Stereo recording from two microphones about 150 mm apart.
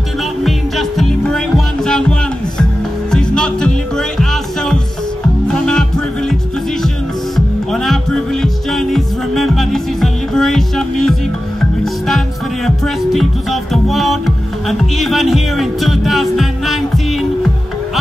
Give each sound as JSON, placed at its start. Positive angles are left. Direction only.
{"t": 0.4, "sound": "music", "side_deg": 0}
{"t": 7.3, "sound": "music", "side_deg": 0}
{"t": 12.6, "sound": "music", "side_deg": 0}